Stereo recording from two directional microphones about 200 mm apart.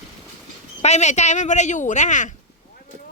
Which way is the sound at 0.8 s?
35° left (ahead or behind).